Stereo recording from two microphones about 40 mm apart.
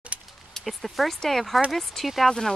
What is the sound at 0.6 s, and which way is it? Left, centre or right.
Speech, centre.